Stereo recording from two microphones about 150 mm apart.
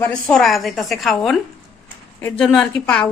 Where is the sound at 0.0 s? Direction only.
5° left (ahead or behind).